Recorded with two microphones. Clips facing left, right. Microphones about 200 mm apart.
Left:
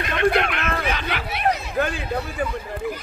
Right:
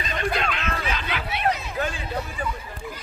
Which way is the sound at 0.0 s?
65° left (ahead or behind).